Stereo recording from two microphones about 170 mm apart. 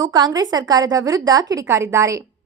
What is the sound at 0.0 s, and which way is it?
A woman's voice, 25° right (ahead or behind).